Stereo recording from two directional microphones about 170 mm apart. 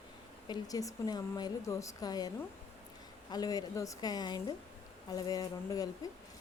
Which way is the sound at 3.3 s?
25° left (ahead or behind).